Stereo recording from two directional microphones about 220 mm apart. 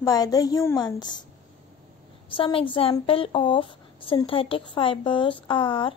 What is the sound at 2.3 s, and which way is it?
Speech, 25° left (ahead or behind).